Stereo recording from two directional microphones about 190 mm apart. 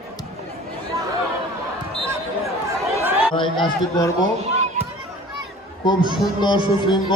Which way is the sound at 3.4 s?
25° left (ahead or behind).